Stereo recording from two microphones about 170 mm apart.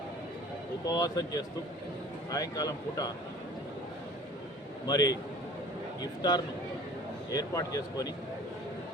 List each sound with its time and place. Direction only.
0.9 s speech: 20° left (ahead or behind)
4.9 s speech: 20° left (ahead or behind)